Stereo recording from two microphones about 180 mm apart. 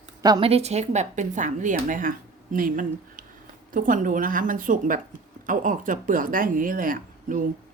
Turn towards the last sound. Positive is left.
turn(degrees=-45)  # may be behind; listen again after turning